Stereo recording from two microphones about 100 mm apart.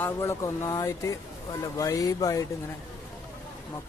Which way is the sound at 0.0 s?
25° left (ahead or behind).